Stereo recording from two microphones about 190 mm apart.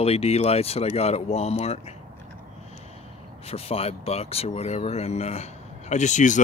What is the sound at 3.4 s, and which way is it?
Speech, 30° left (ahead or behind).